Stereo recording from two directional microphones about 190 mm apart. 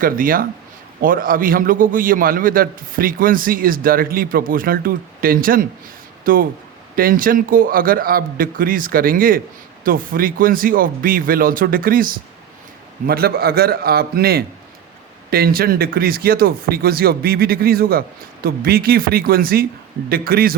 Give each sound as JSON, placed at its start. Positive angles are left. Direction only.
{"t": 0.0, "sound": "a man's voice", "side_deg": -45}